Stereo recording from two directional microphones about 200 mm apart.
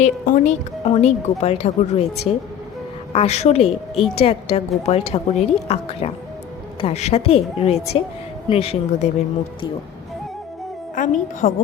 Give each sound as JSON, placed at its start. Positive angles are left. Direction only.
{"t": 0.0, "sound": "a woman's voice", "side_deg": 40}
{"t": 10.9, "sound": "speech", "side_deg": 40}